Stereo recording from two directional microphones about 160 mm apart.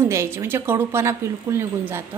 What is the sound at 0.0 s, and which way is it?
A woman's voice, 15° right (ahead or behind).